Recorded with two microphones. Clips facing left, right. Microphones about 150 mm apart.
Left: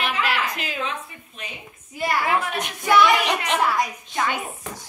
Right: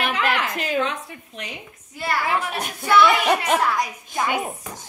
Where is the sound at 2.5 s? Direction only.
40° right (ahead or behind).